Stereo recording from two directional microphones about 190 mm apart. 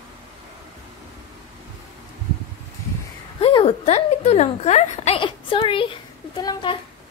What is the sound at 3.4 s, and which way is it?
A woman's voice, 30° left (ahead or behind).